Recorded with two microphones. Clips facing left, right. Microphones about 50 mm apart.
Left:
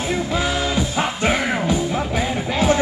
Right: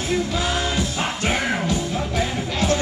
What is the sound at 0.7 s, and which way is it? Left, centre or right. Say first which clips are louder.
Music: left 3 dB; left.